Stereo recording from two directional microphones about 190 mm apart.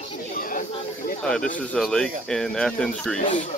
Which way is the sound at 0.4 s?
45° left (ahead or behind).